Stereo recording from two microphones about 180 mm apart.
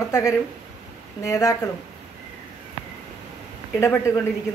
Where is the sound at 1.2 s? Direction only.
20° left (ahead or behind).